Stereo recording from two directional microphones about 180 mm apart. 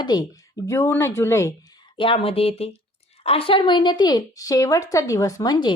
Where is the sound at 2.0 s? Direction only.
30° left (ahead or behind).